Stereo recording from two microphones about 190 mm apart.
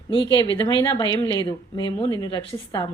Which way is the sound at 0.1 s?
25° left (ahead or behind).